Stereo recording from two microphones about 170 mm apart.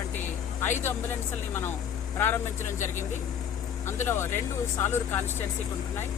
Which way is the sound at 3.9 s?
15° left (ahead or behind).